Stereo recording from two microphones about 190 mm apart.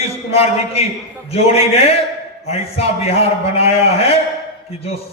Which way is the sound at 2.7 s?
30° left (ahead or behind).